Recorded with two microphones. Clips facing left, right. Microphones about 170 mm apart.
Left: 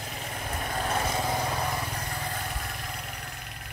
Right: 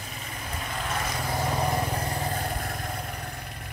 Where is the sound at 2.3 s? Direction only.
45° right (ahead or behind).